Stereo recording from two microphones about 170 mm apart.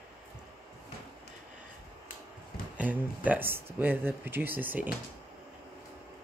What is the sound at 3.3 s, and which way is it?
Speech, 10° right (ahead or behind).